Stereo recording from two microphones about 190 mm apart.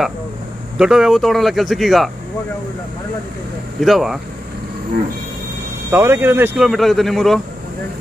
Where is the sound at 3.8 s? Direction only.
Centre (ahead or behind).